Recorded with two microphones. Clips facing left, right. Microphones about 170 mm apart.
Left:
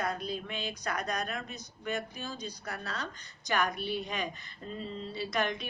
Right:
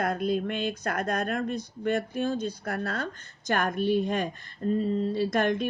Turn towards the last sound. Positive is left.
turn(degrees=-50)  # may be behind; listen again after turning